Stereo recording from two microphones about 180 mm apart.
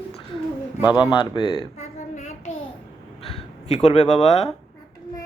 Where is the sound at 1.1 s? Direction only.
25° left (ahead or behind).